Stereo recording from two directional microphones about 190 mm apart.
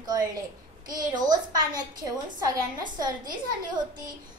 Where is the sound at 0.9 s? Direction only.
20° right (ahead or behind).